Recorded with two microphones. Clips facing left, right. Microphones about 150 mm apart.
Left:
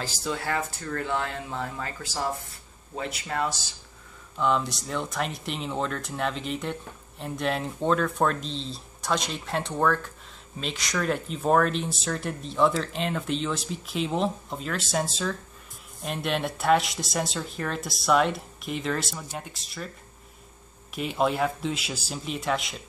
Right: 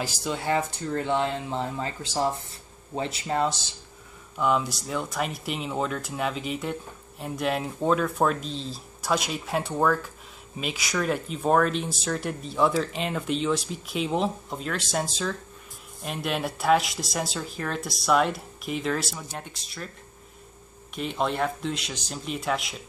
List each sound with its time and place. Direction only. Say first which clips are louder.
0.0 s speech: right 2 dB; 20° right (ahead or behind)
4.4 s speech: right 1 dB; 5° right (ahead or behind)
20.9 s speech: left 2 dB; 5° left (ahead or behind)